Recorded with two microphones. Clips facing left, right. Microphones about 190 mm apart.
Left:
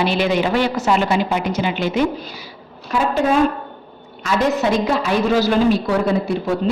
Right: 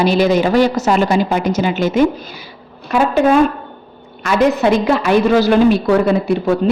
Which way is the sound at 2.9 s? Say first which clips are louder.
Right 5 dB; 60° right (ahead or behind).